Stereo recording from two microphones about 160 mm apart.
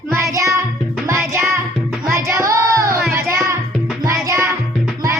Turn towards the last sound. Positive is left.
turn(degrees=-15)  # may be behind; listen again after turning